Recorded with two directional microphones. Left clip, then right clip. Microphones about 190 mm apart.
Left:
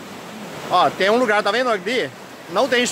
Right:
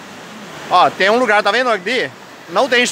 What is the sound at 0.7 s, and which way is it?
Speech, 20° right (ahead or behind).